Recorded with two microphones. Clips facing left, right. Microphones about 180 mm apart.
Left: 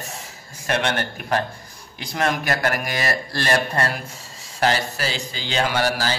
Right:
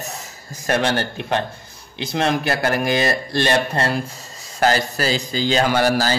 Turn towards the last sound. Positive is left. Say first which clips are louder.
# right 4 dB
turn(degrees=-45)  # may be behind; listen again after turning